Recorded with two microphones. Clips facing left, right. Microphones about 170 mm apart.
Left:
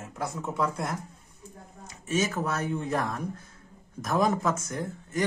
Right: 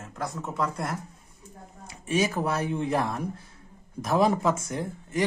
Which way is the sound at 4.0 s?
10° right (ahead or behind).